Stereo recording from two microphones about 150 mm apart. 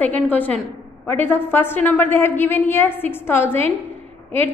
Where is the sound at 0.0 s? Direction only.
10° left (ahead or behind).